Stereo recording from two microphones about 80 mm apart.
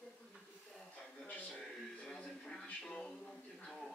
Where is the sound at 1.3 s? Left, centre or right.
Centre.